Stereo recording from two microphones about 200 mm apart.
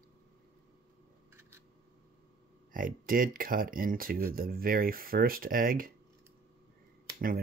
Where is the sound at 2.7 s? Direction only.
45° right (ahead or behind).